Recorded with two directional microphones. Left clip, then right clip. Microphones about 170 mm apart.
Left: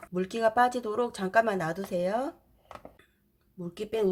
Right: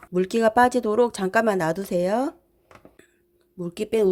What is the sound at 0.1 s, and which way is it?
Speech, 45° right (ahead or behind).